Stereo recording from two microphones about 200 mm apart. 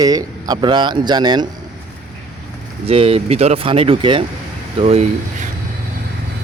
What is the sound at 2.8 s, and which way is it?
Speech, 30° right (ahead or behind).